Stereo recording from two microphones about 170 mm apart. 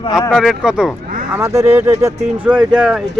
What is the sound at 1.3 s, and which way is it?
Speech, 15° right (ahead or behind).